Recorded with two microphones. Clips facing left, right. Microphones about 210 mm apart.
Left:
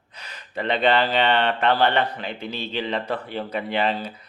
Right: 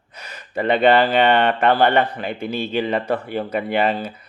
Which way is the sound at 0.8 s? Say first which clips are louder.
Right 5 dB; 50° right (ahead or behind).